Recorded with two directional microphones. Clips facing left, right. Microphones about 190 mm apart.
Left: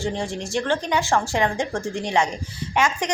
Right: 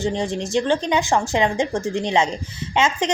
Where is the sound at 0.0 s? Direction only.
20° right (ahead or behind).